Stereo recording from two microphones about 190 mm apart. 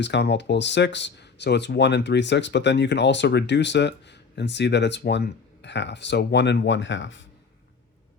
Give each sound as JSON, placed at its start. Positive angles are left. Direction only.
{"t": 0.0, "sound": "speech", "side_deg": 65}